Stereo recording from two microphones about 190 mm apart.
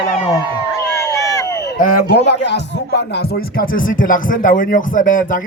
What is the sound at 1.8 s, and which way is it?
Speech, 55° left (ahead or behind).